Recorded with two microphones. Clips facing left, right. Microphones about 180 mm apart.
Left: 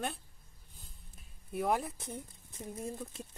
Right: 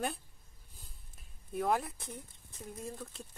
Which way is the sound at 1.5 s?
10° left (ahead or behind).